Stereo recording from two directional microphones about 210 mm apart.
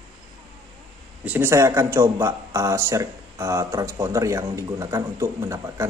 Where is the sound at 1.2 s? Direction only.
10° right (ahead or behind).